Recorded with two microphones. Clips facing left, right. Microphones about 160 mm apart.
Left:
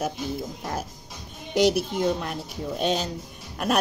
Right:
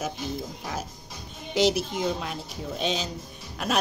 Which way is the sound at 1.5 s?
55° left (ahead or behind).